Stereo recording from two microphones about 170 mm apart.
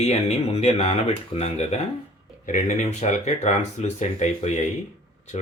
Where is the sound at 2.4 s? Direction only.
50° left (ahead or behind).